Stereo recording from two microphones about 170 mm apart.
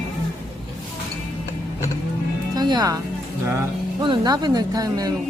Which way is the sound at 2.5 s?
25° right (ahead or behind).